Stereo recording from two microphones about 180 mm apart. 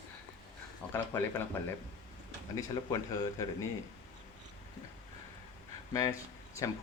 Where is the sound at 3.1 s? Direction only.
20° left (ahead or behind).